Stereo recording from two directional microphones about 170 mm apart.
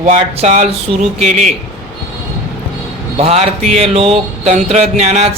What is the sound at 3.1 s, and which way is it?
Music, 35° right (ahead or behind).